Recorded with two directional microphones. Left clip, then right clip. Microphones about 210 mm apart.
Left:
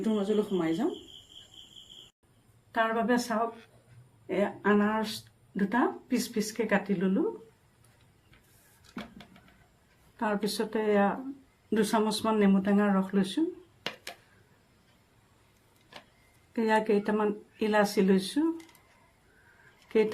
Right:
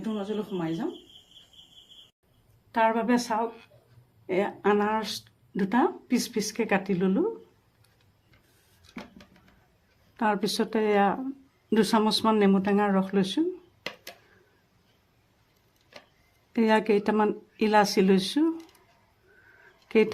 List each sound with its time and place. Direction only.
0.0 s speech: 30° left (ahead or behind)
2.7 s speech: 50° right (ahead or behind)
10.2 s speech: 50° right (ahead or behind)
16.5 s speech: 45° right (ahead or behind)